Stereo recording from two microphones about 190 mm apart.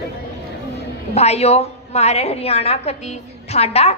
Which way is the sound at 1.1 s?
35° left (ahead or behind).